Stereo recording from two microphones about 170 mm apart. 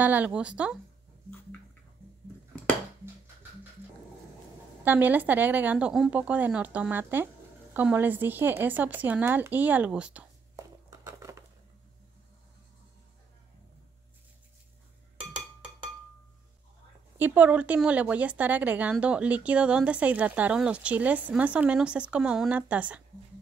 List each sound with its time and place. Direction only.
0.0 s a woman's voice: 10° right (ahead or behind)
4.8 s a woman's voice: 10° right (ahead or behind)
10.5 s a sound: 20° right (ahead or behind)
17.2 s a woman's voice: 10° right (ahead or behind)